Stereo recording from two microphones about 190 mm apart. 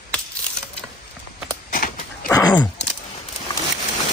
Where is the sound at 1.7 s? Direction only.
45° left (ahead or behind).